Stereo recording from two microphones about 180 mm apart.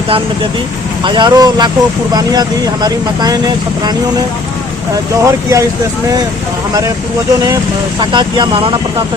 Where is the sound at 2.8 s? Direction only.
20° right (ahead or behind).